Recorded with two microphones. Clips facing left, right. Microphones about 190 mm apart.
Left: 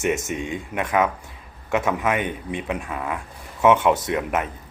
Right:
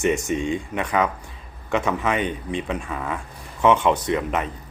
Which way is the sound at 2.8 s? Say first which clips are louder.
Even; 5° left (ahead or behind).